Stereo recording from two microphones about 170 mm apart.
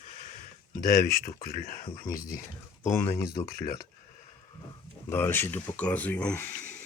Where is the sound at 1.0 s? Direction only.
55° left (ahead or behind).